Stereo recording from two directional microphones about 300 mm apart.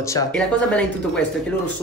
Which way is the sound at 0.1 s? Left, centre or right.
Centre.